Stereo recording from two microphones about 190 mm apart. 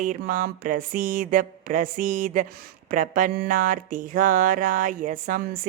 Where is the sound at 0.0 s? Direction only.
45° right (ahead or behind).